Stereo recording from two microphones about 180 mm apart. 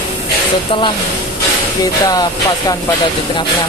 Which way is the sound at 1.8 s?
20° left (ahead or behind).